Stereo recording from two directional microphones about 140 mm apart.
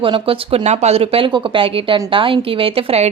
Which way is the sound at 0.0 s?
40° right (ahead or behind).